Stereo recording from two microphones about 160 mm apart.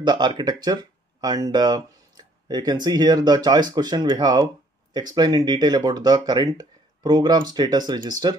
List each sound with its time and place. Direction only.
0.0 s speech: 25° right (ahead or behind)